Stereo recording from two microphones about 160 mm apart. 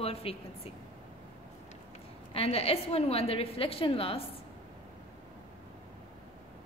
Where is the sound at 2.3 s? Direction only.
40° left (ahead or behind).